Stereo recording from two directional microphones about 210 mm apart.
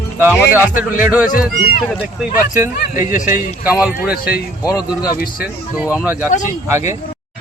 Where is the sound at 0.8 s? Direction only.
10° right (ahead or behind).